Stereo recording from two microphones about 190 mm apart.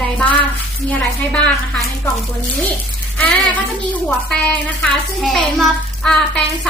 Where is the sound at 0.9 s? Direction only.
5° left (ahead or behind).